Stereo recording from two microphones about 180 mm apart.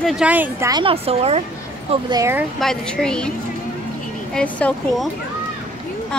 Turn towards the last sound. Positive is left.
turn(degrees=5)  # may be behind; listen again after turning